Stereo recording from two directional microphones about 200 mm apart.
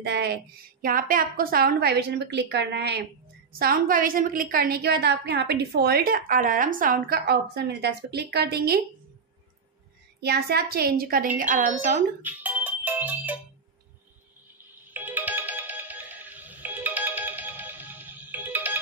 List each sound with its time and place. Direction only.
0.0 s a sound: 55° right (ahead or behind)
0.8 s a woman's voice: 45° right (ahead or behind)
10.2 s a woman's voice: 55° right (ahead or behind)
12.2 s music: 10° right (ahead or behind)
14.9 s music: 10° right (ahead or behind)